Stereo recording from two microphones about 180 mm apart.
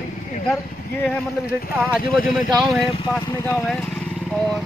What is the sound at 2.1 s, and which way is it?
Speech, 50° left (ahead or behind).